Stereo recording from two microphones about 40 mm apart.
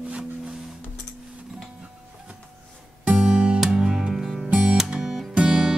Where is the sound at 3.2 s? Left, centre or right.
Centre.